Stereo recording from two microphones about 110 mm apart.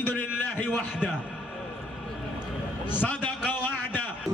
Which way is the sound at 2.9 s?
15° left (ahead or behind).